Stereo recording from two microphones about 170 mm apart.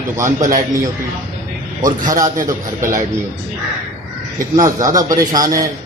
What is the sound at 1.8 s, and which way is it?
Speech, 50° right (ahead or behind).